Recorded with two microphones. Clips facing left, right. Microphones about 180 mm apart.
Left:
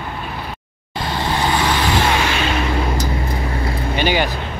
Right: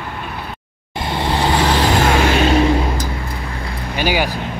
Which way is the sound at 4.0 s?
10° right (ahead or behind).